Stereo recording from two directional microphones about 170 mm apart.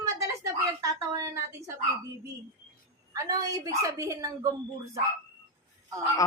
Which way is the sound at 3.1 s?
20° right (ahead or behind).